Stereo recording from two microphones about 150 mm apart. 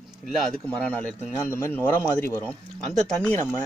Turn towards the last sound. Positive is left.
turn(degrees=5)  # may be behind; listen again after turning